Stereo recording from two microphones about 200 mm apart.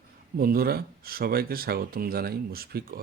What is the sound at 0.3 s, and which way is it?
Speech, 50° right (ahead or behind).